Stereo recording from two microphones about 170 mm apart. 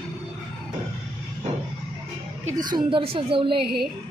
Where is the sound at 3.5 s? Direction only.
70° right (ahead or behind).